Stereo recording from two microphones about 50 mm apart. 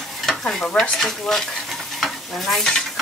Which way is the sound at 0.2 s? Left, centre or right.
Centre.